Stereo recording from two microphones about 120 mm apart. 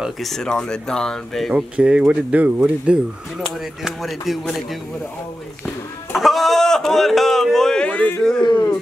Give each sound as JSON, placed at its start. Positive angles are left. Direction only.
{"t": 0.0, "sound": "speech", "side_deg": 0}
{"t": 1.5, "sound": "speech", "side_deg": -10}
{"t": 6.1, "sound": "speech", "side_deg": 0}
{"t": 8.4, "sound": "speech", "side_deg": 40}